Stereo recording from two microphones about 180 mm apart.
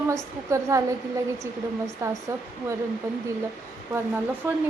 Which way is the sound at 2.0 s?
15° right (ahead or behind).